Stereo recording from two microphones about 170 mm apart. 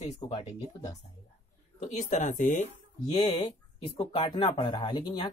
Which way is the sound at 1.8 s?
45° left (ahead or behind).